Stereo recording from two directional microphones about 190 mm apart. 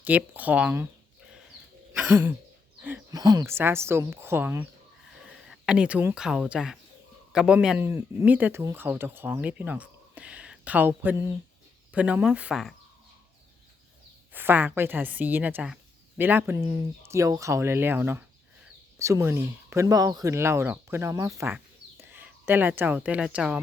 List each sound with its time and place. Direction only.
0.0 s a woman's voice: 10° right (ahead or behind)
1.9 s throat clearing: 10° right (ahead or behind)
3.1 s a woman's voice: 20° right (ahead or behind)
5.1 s a woman's voice: centre (ahead or behind)
14.3 s a woman's voice: 10° right (ahead or behind)